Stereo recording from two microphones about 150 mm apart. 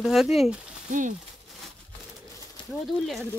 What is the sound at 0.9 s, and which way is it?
Speech, 60° right (ahead or behind).